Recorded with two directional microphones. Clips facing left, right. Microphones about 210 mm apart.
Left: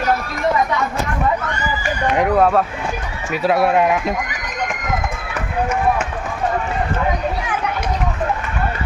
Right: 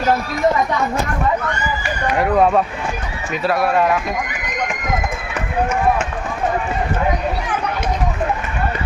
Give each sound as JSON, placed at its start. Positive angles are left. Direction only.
{"t": 2.3, "sound": "speech", "side_deg": 0}
{"t": 3.4, "sound": "speech", "side_deg": 20}